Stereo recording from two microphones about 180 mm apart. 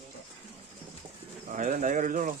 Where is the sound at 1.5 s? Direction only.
45° right (ahead or behind).